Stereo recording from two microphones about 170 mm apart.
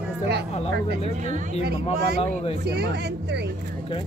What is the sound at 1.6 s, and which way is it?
Speech, 70° right (ahead or behind).